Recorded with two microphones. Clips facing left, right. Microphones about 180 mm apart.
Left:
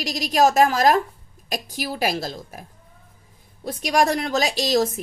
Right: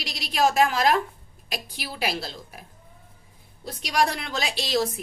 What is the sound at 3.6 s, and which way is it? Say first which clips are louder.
A woman's voice: left 5 dB; 50° left (ahead or behind).